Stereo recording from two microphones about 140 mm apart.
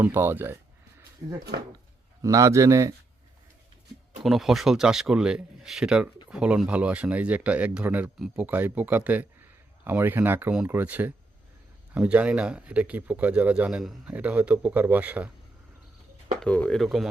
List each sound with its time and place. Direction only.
0.0 s a sound: 15° right (ahead or behind)
2.2 s a man's voice: 20° right (ahead or behind)
4.2 s a man's voice: centre (ahead or behind)
16.4 s speech: 10° left (ahead or behind)